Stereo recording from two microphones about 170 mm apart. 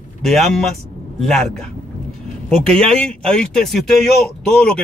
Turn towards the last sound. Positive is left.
turn(degrees=5)  # may be behind; listen again after turning